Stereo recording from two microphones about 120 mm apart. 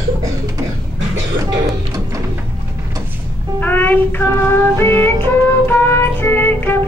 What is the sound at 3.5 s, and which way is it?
Music, 15° left (ahead or behind).